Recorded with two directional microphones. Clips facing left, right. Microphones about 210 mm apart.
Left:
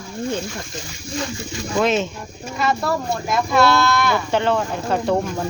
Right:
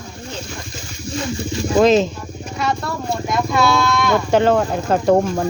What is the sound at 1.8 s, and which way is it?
Speech, 35° right (ahead or behind).